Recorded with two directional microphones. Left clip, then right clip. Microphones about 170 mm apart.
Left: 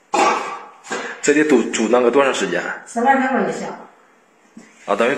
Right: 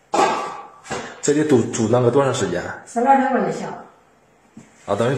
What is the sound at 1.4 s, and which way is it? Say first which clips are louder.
Speech: even; 10° right (ahead or behind).